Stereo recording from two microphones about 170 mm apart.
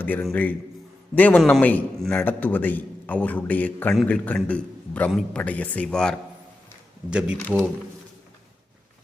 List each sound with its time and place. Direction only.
0.0 s a man's voice: 10° left (ahead or behind)
7.1 s speech: 5° right (ahead or behind)